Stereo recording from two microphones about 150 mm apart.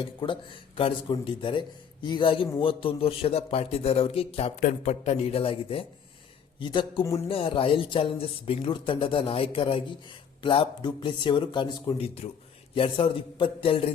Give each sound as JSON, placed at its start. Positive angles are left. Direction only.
{"t": 0.0, "sound": "speech", "side_deg": 35}
{"t": 7.0, "sound": "speech", "side_deg": 20}
{"t": 7.3, "sound": "speech", "side_deg": 35}